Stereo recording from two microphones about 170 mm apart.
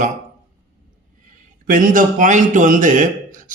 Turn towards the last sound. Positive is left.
turn(degrees=-50)  # may be behind; listen again after turning